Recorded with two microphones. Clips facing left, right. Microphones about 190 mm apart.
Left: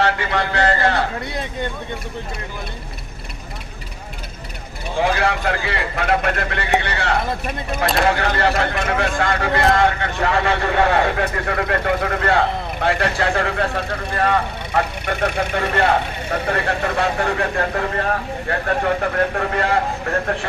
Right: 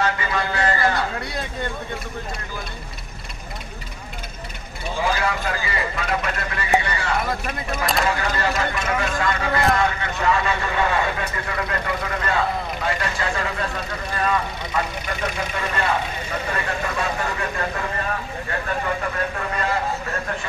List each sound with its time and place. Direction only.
0.0 s speech: 70° left (ahead or behind)
5.0 s speech: 65° left (ahead or behind)